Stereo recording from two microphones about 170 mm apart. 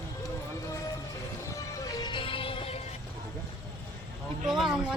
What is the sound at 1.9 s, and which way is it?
Music, 25° left (ahead or behind).